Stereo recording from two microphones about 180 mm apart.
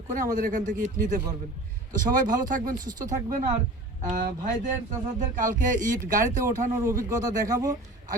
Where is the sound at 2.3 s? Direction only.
50° right (ahead or behind).